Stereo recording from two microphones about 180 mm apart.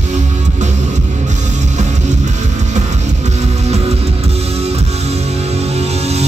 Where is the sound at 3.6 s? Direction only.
35° right (ahead or behind).